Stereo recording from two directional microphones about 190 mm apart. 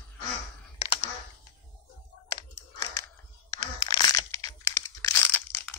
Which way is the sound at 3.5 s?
20° left (ahead or behind).